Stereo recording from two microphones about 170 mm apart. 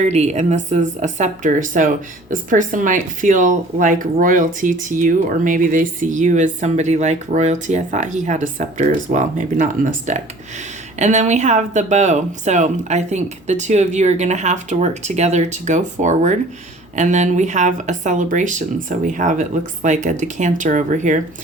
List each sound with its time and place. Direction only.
0.0 s speech: 40° right (ahead or behind)